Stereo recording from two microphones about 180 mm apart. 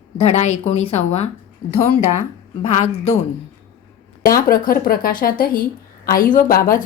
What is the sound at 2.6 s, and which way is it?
Speech, 35° left (ahead or behind).